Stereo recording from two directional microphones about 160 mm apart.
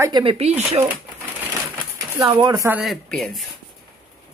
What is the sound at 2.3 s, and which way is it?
Speech, 20° right (ahead or behind).